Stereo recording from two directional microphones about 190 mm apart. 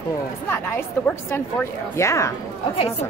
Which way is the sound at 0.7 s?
10° left (ahead or behind).